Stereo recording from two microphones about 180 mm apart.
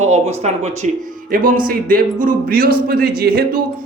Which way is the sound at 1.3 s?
50° right (ahead or behind).